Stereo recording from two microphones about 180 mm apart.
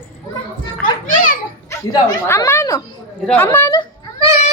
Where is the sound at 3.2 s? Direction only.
5° left (ahead or behind).